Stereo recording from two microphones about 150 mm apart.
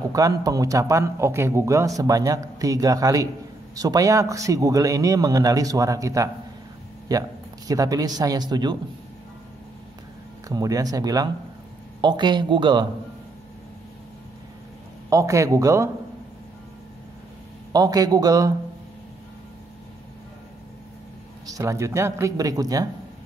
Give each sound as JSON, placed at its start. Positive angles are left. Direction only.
{"t": 0.1, "sound": "speech", "side_deg": -25}
{"t": 10.5, "sound": "speech", "side_deg": -25}
{"t": 15.0, "sound": "speech", "side_deg": -20}
{"t": 17.7, "sound": "speech", "side_deg": -25}
{"t": 21.5, "sound": "speech", "side_deg": -20}